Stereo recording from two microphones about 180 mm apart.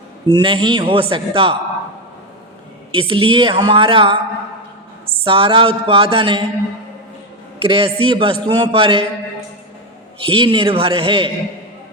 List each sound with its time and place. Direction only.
0.3 s a man's voice: 25° right (ahead or behind)
1.1 s a sound: 30° right (ahead or behind)
2.9 s a man's voice: 30° right (ahead or behind)
5.2 s a sound: 30° right (ahead or behind)
7.6 s a man's voice: 30° right (ahead or behind)
10.2 s a man's voice: 30° right (ahead or behind)